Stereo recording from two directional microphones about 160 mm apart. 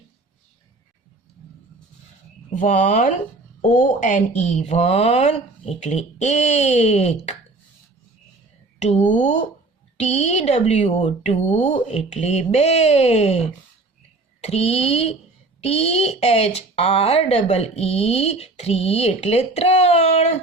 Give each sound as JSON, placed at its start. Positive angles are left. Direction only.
{"t": 2.6, "sound": "speech", "side_deg": 55}
{"t": 8.8, "sound": "speech", "side_deg": 45}